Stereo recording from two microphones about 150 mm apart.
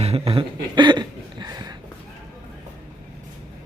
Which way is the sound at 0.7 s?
30° right (ahead or behind).